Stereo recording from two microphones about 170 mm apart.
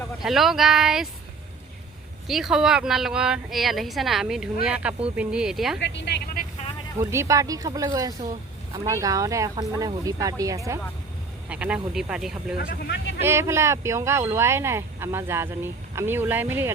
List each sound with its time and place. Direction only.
0.2 s speech: centre (ahead or behind)
2.2 s speech: centre (ahead or behind)
5.8 s a woman's voice: 90° left
7.0 s speech: 15° right (ahead or behind)
11.4 s speech: 5° right (ahead or behind)
12.5 s speech: 65° left (ahead or behind)
13.2 s speech: 15° right (ahead or behind)